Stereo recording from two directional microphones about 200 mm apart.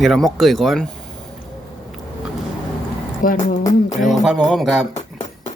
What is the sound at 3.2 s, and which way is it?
Speech, 40° left (ahead or behind).